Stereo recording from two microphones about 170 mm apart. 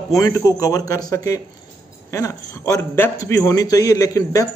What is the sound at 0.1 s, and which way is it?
A man's voice, 20° left (ahead or behind).